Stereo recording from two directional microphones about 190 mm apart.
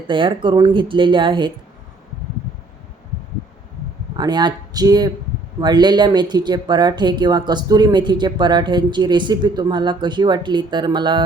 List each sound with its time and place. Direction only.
0.1 s speech: 25° right (ahead or behind)
4.2 s speech: 25° right (ahead or behind)